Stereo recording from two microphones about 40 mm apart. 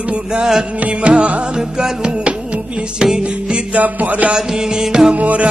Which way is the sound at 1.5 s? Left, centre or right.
Centre.